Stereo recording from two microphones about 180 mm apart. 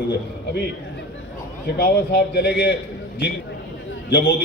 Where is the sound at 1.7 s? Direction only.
60° left (ahead or behind).